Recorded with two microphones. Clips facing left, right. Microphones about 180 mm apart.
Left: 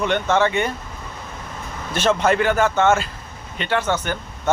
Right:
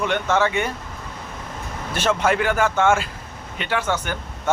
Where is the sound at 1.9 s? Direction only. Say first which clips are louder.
Left 2 dB; 10° right (ahead or behind).